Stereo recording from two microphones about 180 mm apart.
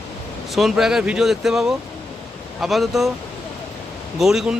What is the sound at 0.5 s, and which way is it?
A man's voice, centre (ahead or behind).